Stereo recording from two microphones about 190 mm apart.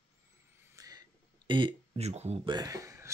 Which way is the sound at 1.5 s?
30° right (ahead or behind).